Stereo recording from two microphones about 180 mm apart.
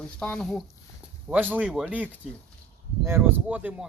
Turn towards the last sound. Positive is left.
turn(degrees=-10)  # may be behind; listen again after turning